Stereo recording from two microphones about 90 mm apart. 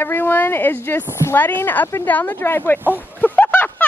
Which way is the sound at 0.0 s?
25° left (ahead or behind).